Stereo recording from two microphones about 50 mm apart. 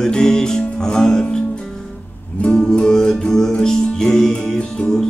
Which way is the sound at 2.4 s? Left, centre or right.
Left.